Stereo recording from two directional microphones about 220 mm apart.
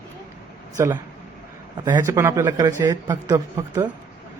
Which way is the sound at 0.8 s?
10° right (ahead or behind).